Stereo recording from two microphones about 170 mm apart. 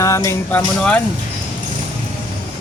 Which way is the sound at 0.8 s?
5° left (ahead or behind).